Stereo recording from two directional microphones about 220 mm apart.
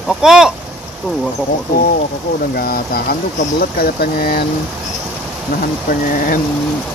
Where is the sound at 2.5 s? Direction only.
45° left (ahead or behind).